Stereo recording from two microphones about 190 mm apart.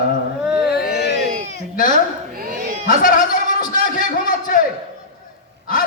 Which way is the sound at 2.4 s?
45° right (ahead or behind).